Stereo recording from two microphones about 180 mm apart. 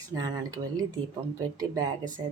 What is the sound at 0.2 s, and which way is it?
Speech, 20° right (ahead or behind).